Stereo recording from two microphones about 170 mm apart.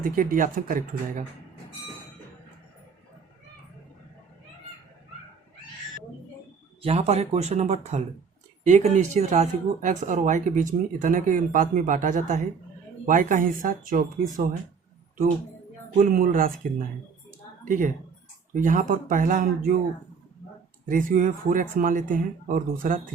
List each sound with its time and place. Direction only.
0.0 s speech: 55° right (ahead or behind)
6.8 s speech: 40° right (ahead or behind)
16.0 s speech: 55° right (ahead or behind)
17.7 s speech: 50° right (ahead or behind)
20.8 s speech: 55° right (ahead or behind)